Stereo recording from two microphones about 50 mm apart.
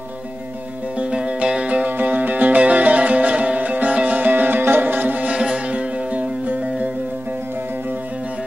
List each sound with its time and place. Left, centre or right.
0.9 s music: right
2.0 s music: right
5.3 s music: centre
6.4 s music: right